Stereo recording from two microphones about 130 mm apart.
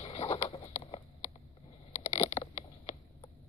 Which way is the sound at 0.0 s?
45° left (ahead or behind).